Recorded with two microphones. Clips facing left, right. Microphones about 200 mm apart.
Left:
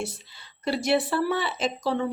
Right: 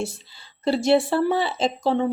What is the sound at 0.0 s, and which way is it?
Speech, 30° right (ahead or behind).